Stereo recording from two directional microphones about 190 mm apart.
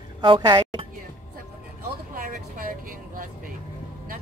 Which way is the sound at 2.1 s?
50° right (ahead or behind).